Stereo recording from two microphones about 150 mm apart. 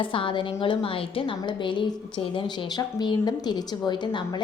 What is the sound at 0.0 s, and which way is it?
A woman's voice, 35° left (ahead or behind).